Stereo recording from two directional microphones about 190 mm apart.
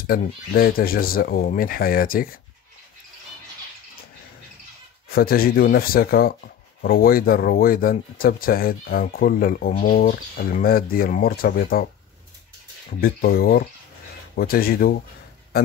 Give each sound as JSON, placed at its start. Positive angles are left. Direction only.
{"t": 0.0, "sound": "speech", "side_deg": 50}
{"t": 5.1, "sound": "speech", "side_deg": 50}
{"t": 13.0, "sound": "speech", "side_deg": 55}